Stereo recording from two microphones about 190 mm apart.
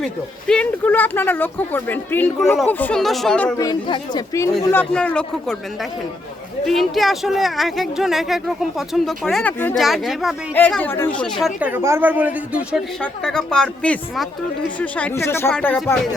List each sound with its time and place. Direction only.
0.0 s a woman's voice: 5° left (ahead or behind)
3.6 s speech: 25° left (ahead or behind)
4.7 s speech: 10° left (ahead or behind)
6.7 s a woman's voice: centre (ahead or behind)
12.7 s a woman's voice: 5° left (ahead or behind)